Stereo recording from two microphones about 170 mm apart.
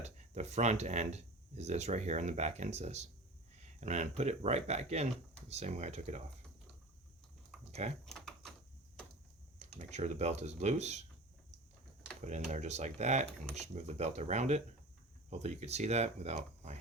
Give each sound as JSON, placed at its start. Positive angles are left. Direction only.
{"t": 0.0, "sound": "speech", "side_deg": -40}
{"t": 8.0, "sound": "a sound", "side_deg": 5}
{"t": 9.6, "sound": "speech", "side_deg": -40}
{"t": 12.2, "sound": "speech", "side_deg": -45}